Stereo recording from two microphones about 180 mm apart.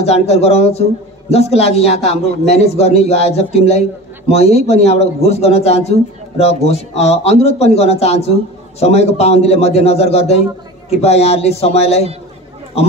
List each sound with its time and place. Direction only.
0.0 s a man's voice: 35° left (ahead or behind)